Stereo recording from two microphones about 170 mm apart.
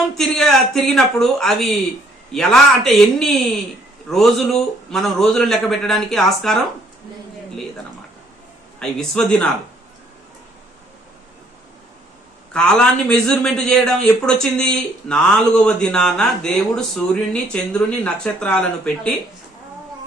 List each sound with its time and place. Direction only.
0.2 s a man's voice: centre (ahead or behind)
8.8 s a man's voice: 5° left (ahead or behind)
12.5 s a man's voice: 5° left (ahead or behind)